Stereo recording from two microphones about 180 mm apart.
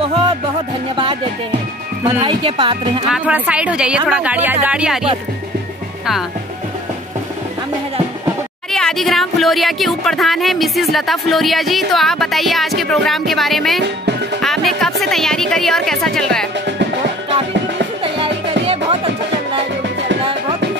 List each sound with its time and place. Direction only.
2.2 s speech: 25° right (ahead or behind)
3.1 s speech: 5° right (ahead or behind)
8.7 s speech: centre (ahead or behind)
18.0 s music: 30° right (ahead or behind)